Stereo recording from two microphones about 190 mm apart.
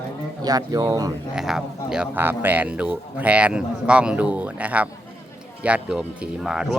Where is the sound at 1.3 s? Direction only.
Centre (ahead or behind).